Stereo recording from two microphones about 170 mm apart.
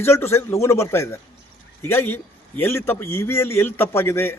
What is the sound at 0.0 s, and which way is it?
A man's voice, 15° left (ahead or behind).